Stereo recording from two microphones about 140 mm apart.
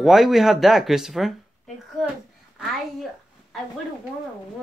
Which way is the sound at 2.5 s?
Centre (ahead or behind).